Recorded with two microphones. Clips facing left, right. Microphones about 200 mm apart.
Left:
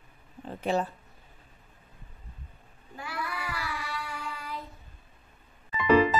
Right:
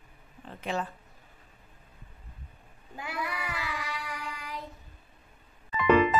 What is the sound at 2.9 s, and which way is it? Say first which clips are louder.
Child singing: right 1 dB; 20° right (ahead or behind).